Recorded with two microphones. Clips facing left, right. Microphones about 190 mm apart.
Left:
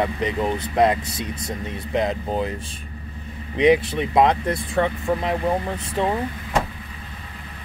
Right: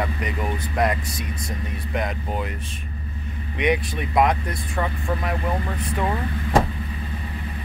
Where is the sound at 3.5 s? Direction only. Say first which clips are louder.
Left 6 dB; 25° left (ahead or behind).